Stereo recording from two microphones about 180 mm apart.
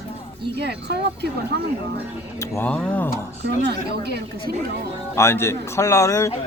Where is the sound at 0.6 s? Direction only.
70° right (ahead or behind).